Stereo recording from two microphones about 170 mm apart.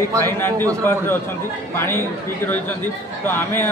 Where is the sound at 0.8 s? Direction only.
15° left (ahead or behind).